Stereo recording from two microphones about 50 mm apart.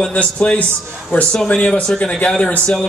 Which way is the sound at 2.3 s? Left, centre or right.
Centre.